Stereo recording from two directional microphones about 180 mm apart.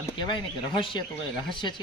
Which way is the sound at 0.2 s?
25° left (ahead or behind).